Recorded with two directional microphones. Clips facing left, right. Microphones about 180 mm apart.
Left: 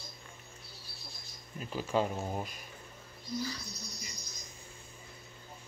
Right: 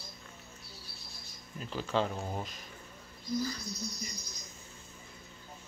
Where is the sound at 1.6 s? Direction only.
10° left (ahead or behind).